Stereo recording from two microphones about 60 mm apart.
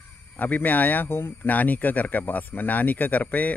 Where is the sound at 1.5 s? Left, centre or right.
Left.